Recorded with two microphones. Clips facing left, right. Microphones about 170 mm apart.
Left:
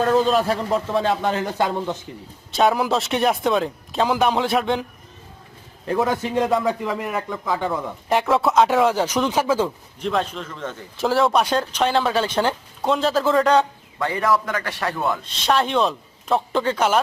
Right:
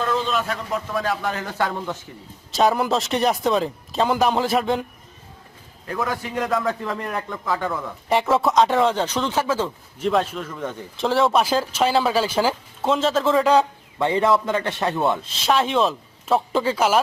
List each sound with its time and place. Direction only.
0.0 s a man's voice: 40° left (ahead or behind); by 2.0 s 20° left (ahead or behind)
2.5 s speech: centre (ahead or behind)
5.8 s a man's voice: 25° left (ahead or behind)
6.8 s speech: 5° left (ahead or behind)
8.1 s speech: centre (ahead or behind)
10.0 s a man's voice: 5° right (ahead or behind)
10.9 s speech: centre (ahead or behind)
14.0 s a man's voice: 25° right (ahead or behind)
15.2 s speech: centre (ahead or behind)